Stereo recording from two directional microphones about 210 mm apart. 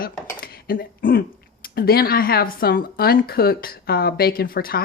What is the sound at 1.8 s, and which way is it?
Speech, 45° left (ahead or behind).